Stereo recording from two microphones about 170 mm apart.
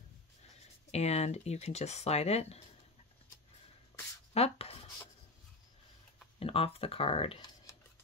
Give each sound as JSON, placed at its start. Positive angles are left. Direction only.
{"t": 0.9, "sound": "speech", "side_deg": 40}
{"t": 4.3, "sound": "writing", "side_deg": 35}
{"t": 6.4, "sound": "speech", "side_deg": 35}